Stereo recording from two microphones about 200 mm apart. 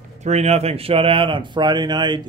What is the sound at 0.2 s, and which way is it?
Speech, 35° right (ahead or behind).